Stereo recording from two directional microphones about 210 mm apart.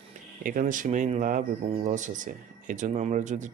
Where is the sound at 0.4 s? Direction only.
40° right (ahead or behind).